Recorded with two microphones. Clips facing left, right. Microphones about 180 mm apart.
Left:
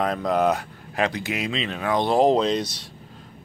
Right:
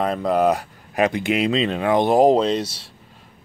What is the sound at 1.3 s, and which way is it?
Speech, 30° right (ahead or behind).